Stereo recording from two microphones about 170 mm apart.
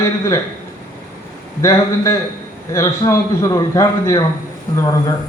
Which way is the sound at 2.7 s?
15° left (ahead or behind).